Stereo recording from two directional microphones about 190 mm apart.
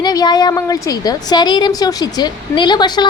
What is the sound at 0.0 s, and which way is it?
A woman's voice, 20° left (ahead or behind).